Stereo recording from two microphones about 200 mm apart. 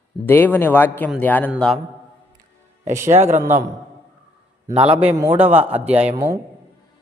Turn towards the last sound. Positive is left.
turn(degrees=-15)  # may be behind; listen again after turning